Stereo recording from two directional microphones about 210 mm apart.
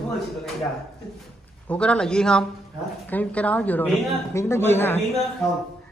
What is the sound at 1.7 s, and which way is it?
A woman's voice, 5° left (ahead or behind).